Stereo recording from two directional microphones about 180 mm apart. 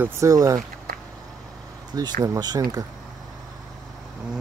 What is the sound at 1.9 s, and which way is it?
Speech, 20° right (ahead or behind).